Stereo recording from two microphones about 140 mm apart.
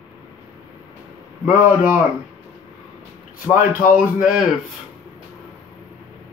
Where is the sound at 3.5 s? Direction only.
85° left.